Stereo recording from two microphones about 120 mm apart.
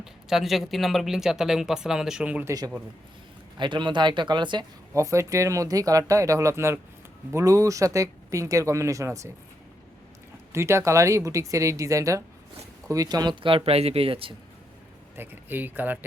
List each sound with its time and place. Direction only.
0.0 s speech: 5° right (ahead or behind)
2.4 s speech: 25° right (ahead or behind)
3.6 s speech: 40° right (ahead or behind)
4.9 s speech: 25° right (ahead or behind)
10.5 s speech: 25° right (ahead or behind); by 14.3 s 50° right (ahead or behind)
15.1 s speech: 15° right (ahead or behind)